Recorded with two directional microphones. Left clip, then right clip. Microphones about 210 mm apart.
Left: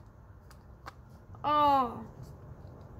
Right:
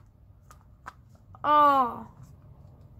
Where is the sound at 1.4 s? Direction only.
Centre (ahead or behind).